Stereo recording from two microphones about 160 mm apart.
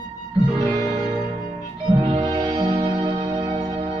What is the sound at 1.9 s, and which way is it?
Music, 30° right (ahead or behind).